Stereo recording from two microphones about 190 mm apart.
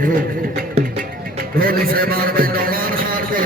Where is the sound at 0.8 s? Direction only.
35° right (ahead or behind).